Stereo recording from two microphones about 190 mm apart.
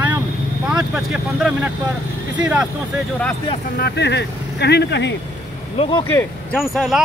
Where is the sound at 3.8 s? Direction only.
60° left (ahead or behind).